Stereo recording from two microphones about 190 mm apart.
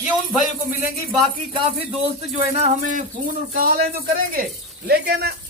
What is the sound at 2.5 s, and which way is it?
Speech, 40° right (ahead or behind).